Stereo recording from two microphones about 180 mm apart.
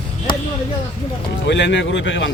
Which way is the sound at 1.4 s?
80° left.